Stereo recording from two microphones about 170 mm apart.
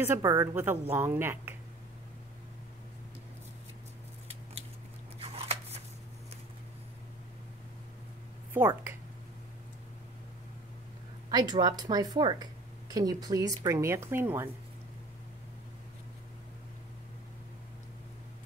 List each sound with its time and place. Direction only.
0.0 s a woman's voice: 15° right (ahead or behind)
5.2 s a sound: 35° right (ahead or behind)
8.5 s a woman's voice: 15° right (ahead or behind)
11.2 s a woman's voice: 25° right (ahead or behind)